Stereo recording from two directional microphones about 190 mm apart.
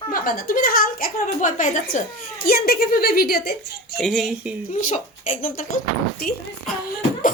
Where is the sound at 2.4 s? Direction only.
55° left (ahead or behind).